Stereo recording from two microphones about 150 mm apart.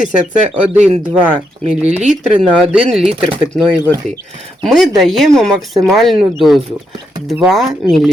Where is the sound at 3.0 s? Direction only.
35° right (ahead or behind).